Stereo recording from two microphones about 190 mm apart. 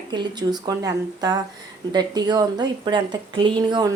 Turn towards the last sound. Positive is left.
turn(degrees=-25)  # may be behind; listen again after turning